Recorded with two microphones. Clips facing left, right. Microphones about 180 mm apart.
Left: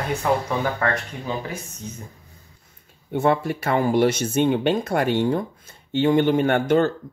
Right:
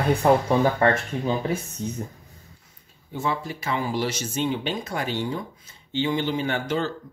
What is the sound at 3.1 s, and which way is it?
Speech, 60° left (ahead or behind).